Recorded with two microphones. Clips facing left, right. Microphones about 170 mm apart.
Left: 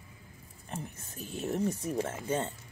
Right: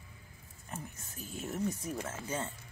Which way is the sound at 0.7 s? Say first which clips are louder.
Left 4 dB; 30° left (ahead or behind).